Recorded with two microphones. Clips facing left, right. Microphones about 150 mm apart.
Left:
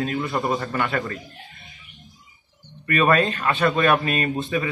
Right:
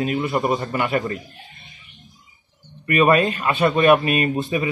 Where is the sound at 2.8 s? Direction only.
20° right (ahead or behind).